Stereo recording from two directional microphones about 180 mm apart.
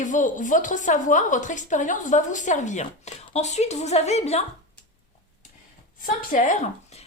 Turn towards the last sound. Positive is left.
turn(degrees=40)  # may be behind; listen again after turning